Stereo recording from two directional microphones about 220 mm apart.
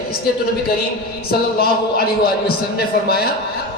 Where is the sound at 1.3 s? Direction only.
45° left (ahead or behind).